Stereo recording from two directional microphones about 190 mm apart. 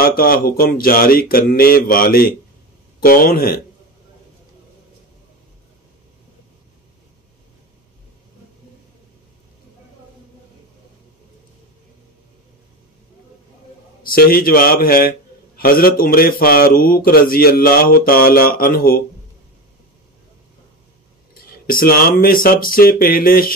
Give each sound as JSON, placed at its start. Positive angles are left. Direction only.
{"t": 0.0, "sound": "a man's voice", "side_deg": 50}
{"t": 14.0, "sound": "a man's voice", "side_deg": 50}
{"t": 21.4, "sound": "a man's voice", "side_deg": 50}